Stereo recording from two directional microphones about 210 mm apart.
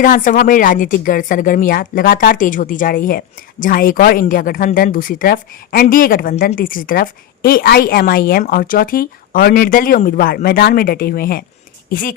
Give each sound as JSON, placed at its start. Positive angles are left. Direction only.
{"t": 0.0, "sound": "a woman's voice", "side_deg": 40}